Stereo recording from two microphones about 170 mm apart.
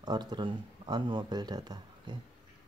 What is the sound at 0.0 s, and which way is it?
Speech, 25° right (ahead or behind).